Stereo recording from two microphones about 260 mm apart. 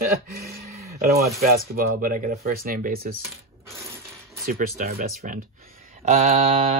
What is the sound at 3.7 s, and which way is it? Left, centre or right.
Crushing, centre.